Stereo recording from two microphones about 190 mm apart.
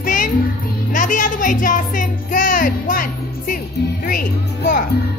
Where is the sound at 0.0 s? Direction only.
45° left (ahead or behind).